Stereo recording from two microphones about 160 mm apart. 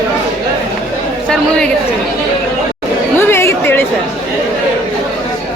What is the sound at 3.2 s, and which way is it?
Chatter, 15° left (ahead or behind).